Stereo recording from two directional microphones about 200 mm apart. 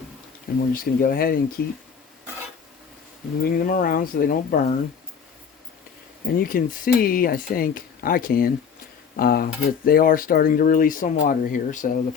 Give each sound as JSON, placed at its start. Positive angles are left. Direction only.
{"t": 0.7, "sound": "speech", "side_deg": 45}
{"t": 3.4, "sound": "speech", "side_deg": 45}
{"t": 6.2, "sound": "speech", "side_deg": 50}